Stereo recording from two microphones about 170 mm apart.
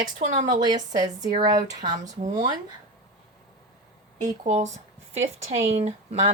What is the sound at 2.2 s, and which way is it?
Speech, 45° right (ahead or behind).